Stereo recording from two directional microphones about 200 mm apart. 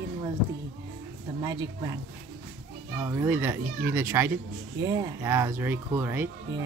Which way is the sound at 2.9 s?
15° right (ahead or behind).